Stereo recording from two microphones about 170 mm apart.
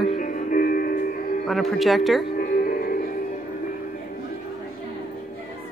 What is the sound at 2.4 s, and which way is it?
Music, 55° left (ahead or behind).